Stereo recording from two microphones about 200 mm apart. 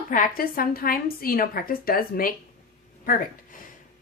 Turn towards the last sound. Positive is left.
turn(degrees=45)  # may be behind; listen again after turning